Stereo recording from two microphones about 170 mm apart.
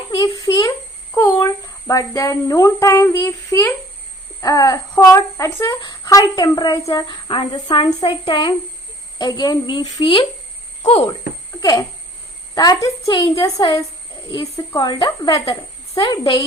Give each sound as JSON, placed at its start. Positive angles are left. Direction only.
{"t": 0.1, "sound": "speech", "side_deg": 25}
{"t": 11.6, "sound": "speech", "side_deg": 20}